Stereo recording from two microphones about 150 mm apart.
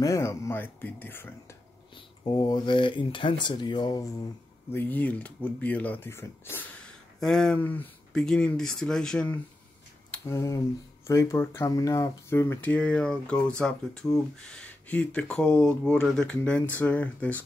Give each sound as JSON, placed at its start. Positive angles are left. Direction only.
{"t": 0.0, "sound": "speech", "side_deg": 20}
{"t": 2.0, "sound": "speech", "side_deg": 30}
{"t": 4.7, "sound": "speech", "side_deg": 10}
{"t": 10.3, "sound": "speech", "side_deg": 20}